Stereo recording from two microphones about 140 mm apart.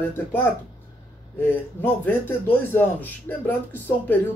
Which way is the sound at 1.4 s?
15° left (ahead or behind).